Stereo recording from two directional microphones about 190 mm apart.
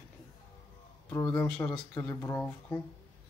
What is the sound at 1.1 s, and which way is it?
Speech, 15° left (ahead or behind).